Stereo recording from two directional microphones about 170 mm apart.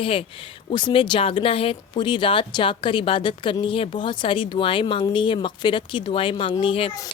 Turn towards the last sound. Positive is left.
turn(degrees=30)  # may be behind; listen again after turning